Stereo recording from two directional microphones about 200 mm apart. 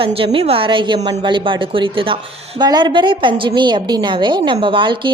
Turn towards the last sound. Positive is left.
turn(degrees=-25)  # may be behind; listen again after turning